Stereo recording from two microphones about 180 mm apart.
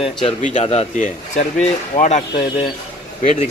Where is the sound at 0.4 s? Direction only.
45° left (ahead or behind).